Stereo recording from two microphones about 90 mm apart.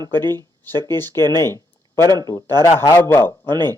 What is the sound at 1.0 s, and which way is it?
Speech, 45° right (ahead or behind).